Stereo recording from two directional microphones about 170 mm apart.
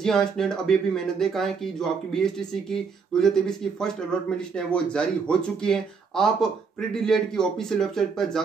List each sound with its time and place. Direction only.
0.0 s speech: 5° left (ahead or behind)